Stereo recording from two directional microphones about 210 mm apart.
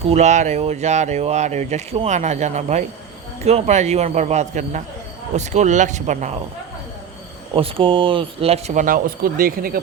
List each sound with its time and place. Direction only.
0.1 s speech: 35° right (ahead or behind)
7.5 s speech: 25° right (ahead or behind); by 9.8 s 45° right (ahead or behind)